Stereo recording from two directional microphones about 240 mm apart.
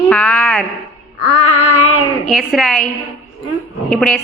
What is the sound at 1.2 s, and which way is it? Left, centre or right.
Child singing, left.